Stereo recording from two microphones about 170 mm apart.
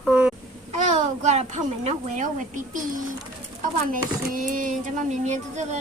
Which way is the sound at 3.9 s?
55° right (ahead or behind).